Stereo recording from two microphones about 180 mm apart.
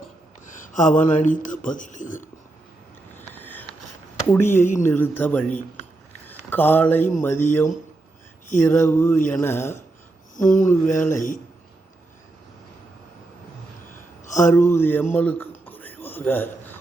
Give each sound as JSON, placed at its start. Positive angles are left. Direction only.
{"t": 0.7, "sound": "speech", "side_deg": 45}
{"t": 3.2, "sound": "a sound", "side_deg": 10}
{"t": 4.3, "sound": "speech", "side_deg": 15}
{"t": 6.1, "sound": "a sound", "side_deg": 10}
{"t": 7.2, "sound": "speech", "side_deg": 10}
{"t": 10.3, "sound": "speech", "side_deg": 45}
{"t": 10.9, "sound": "speech", "side_deg": 15}
{"t": 14.3, "sound": "a sound", "side_deg": 45}
{"t": 14.5, "sound": "speech", "side_deg": 15}